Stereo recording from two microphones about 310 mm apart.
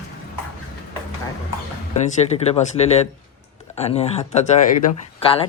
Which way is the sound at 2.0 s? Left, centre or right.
Left.